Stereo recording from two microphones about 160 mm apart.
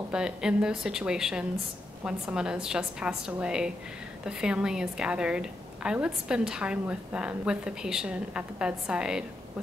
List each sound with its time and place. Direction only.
0.1 s a woman's voice: 5° right (ahead or behind)